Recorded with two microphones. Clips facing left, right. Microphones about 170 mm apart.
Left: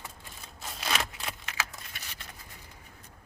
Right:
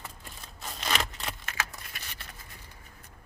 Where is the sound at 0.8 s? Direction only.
Centre (ahead or behind).